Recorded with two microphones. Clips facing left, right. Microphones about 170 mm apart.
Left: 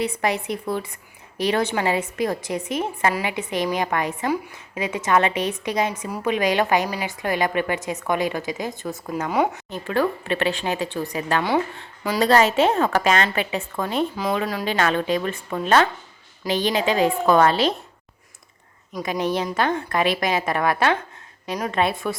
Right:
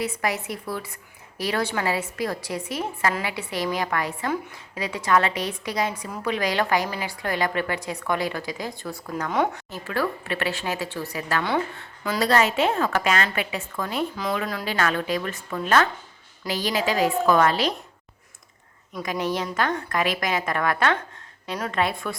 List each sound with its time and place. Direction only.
0.2 s a woman's voice: 25° left (ahead or behind)
12.3 s a woman's voice: 30° left (ahead or behind)
18.9 s a woman's voice: 20° left (ahead or behind)